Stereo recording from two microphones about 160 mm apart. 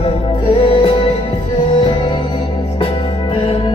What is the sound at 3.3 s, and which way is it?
Music, 35° left (ahead or behind).